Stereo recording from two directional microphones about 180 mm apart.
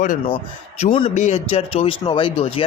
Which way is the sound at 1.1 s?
40° left (ahead or behind).